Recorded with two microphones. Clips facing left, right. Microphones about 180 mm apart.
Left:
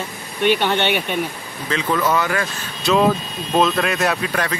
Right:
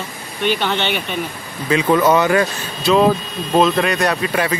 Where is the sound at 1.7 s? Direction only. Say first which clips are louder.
Right 6 dB; 20° right (ahead or behind).